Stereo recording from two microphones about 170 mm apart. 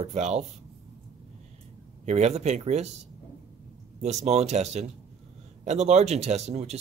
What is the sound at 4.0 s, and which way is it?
Speech, 40° right (ahead or behind).